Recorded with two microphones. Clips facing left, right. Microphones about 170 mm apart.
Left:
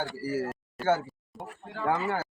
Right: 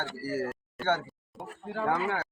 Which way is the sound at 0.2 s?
10° left (ahead or behind).